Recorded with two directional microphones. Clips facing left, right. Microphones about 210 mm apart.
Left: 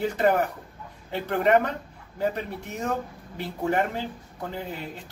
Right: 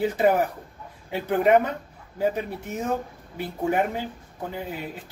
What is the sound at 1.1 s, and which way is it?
Speech, 5° right (ahead or behind).